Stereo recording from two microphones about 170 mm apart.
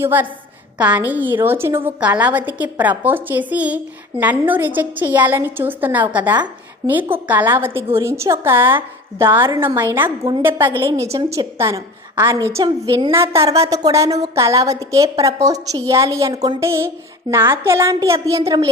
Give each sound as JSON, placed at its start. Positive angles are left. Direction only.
{"t": 0.0, "sound": "a woman's voice", "side_deg": -10}
{"t": 13.4, "sound": "speech", "side_deg": -35}
{"t": 13.7, "sound": "a woman's voice", "side_deg": -20}